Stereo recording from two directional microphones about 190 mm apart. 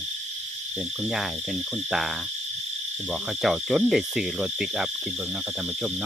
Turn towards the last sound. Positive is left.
turn(degrees=-5)  # may be behind; listen again after turning